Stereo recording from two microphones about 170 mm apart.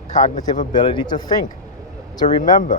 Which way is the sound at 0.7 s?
30° left (ahead or behind).